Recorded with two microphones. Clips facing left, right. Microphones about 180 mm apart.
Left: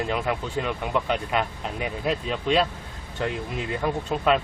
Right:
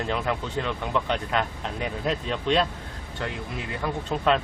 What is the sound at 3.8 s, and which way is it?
Speech, 5° left (ahead or behind).